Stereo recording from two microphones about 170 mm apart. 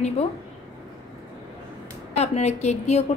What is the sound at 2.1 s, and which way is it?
Speech, 40° left (ahead or behind).